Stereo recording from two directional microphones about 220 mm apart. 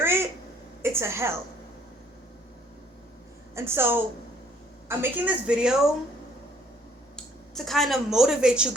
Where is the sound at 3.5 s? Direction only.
10° right (ahead or behind).